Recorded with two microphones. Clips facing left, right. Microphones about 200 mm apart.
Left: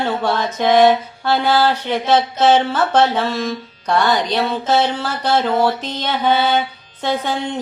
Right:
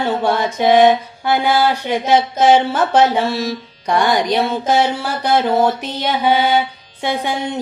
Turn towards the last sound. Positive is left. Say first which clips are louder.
# even
turn(degrees=-15)  # may be behind; listen again after turning